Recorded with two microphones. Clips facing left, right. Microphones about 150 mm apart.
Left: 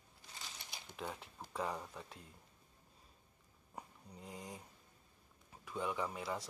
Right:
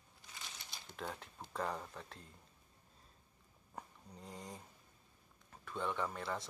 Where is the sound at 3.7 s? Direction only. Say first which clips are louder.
Even; 10° left (ahead or behind).